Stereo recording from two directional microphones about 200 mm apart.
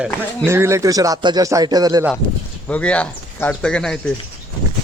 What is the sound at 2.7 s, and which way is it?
A man's voice, 5° left (ahead or behind).